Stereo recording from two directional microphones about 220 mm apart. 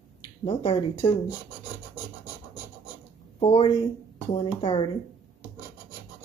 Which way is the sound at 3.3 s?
25° left (ahead or behind).